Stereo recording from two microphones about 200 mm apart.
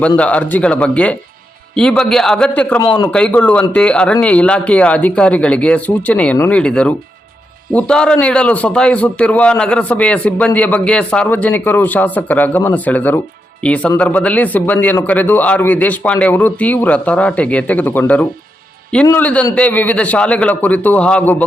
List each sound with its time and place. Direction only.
0.2 s a man's voice: 5° left (ahead or behind)
2.8 s speech: 25° left (ahead or behind)
3.1 s a man's voice: 5° left (ahead or behind)